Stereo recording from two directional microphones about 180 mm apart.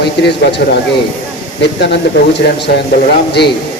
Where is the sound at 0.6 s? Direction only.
60° left (ahead or behind).